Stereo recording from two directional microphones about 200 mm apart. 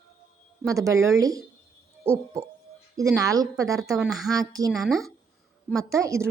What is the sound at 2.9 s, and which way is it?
A woman's voice, 15° right (ahead or behind).